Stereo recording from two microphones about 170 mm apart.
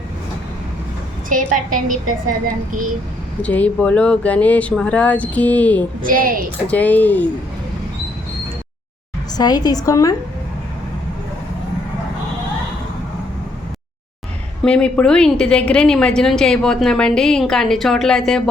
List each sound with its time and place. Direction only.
1.3 s a woman's voice: 50° right (ahead or behind)
3.4 s speech: 10° left (ahead or behind)
6.0 s a woman's voice: 55° right (ahead or behind)
6.7 s speech: 10° left (ahead or behind)
9.4 s a woman's voice: 25° left (ahead or behind)
14.6 s a woman's voice: 5° left (ahead or behind)